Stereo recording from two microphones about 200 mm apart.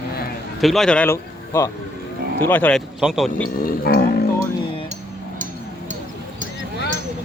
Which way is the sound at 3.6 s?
50° left (ahead or behind).